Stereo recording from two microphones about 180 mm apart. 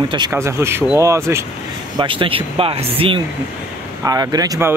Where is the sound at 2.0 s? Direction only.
30° right (ahead or behind).